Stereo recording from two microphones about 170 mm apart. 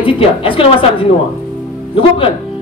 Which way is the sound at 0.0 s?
30° left (ahead or behind).